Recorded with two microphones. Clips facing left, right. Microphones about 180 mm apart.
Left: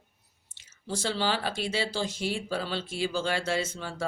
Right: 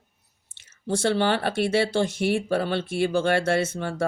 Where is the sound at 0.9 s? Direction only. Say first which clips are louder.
Right 7 dB; 65° right (ahead or behind).